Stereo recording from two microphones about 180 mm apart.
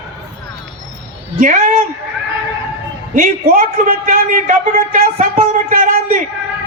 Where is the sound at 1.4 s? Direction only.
45° right (ahead or behind).